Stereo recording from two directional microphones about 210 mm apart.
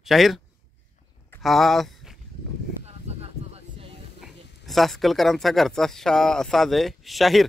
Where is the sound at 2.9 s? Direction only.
30° right (ahead or behind).